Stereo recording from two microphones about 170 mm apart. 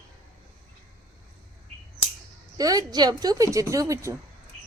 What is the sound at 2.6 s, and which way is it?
A woman's voice, 20° right (ahead or behind).